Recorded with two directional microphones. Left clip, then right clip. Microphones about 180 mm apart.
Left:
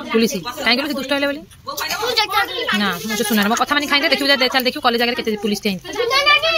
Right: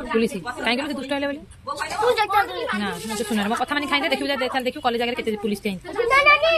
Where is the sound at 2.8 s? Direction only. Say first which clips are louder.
Left 7 dB; 25° left (ahead or behind).